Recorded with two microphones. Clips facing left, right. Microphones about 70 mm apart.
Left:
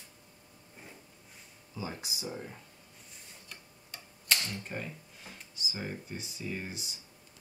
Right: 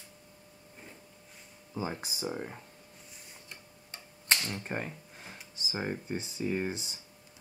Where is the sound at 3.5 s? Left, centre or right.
Right.